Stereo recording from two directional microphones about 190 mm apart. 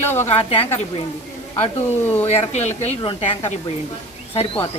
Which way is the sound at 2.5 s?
35° left (ahead or behind).